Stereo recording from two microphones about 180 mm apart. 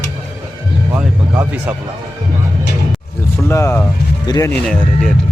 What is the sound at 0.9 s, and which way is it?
Speech, 10° right (ahead or behind).